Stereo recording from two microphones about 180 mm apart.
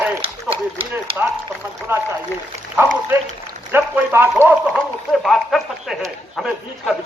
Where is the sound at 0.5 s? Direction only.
30° right (ahead or behind).